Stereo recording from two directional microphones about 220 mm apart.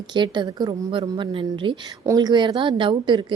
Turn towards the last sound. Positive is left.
turn(degrees=-20)  # may be behind; listen again after turning